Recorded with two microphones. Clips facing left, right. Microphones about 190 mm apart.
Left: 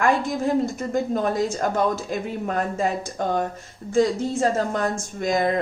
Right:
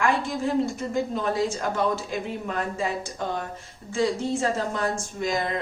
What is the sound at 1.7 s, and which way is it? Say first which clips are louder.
A woman's voice: left 3 dB; 45° left (ahead or behind).